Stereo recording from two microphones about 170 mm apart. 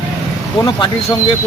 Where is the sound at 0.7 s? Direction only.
25° left (ahead or behind).